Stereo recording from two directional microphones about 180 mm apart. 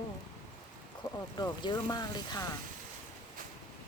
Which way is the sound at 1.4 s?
25° left (ahead or behind).